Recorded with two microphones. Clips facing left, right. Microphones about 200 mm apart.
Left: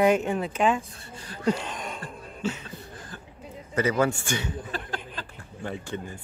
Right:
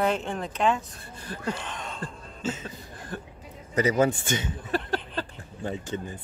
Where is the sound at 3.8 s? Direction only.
15° right (ahead or behind).